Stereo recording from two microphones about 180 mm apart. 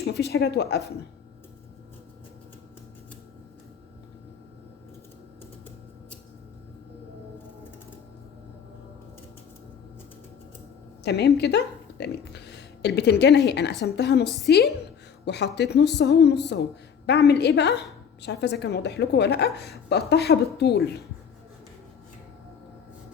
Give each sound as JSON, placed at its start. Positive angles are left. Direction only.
{"t": 0.0, "sound": "speech", "side_deg": 65}
{"t": 11.0, "sound": "a woman's voice", "side_deg": 70}